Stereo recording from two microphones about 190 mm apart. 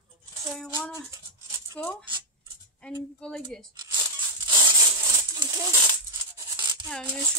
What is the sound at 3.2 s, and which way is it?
Speech, 5° left (ahead or behind).